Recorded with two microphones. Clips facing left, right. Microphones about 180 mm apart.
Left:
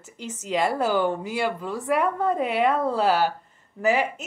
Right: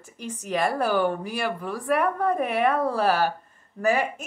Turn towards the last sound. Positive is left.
turn(degrees=20)  # may be behind; listen again after turning